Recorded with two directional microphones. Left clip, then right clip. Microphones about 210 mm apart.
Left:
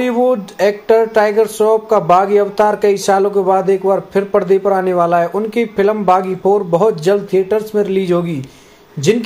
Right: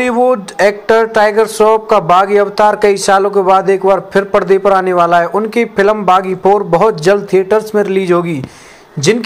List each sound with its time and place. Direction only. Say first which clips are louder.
0.0 s speech: right 3 dB; 10° right (ahead or behind)
2.0 s a man's voice: right 2 dB; 20° right (ahead or behind)